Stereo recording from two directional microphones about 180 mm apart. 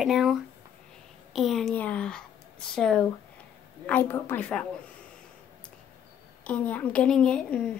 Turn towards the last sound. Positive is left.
turn(degrees=5)  # may be behind; listen again after turning